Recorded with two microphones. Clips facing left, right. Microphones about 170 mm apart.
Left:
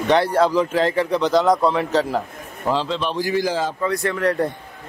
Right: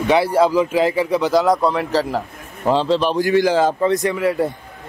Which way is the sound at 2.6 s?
35° right (ahead or behind).